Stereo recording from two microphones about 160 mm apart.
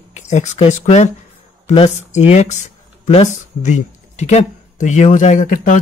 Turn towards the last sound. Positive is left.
turn(degrees=55)  # may be behind; listen again after turning